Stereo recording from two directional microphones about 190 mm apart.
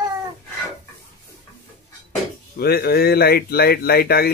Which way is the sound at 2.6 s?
55° left (ahead or behind).